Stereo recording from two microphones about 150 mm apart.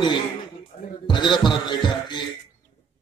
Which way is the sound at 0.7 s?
80° left.